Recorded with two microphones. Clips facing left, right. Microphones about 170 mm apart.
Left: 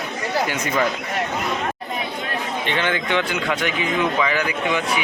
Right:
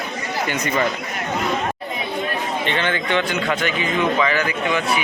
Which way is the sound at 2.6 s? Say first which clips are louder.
Left 1 dB; 10° left (ahead or behind).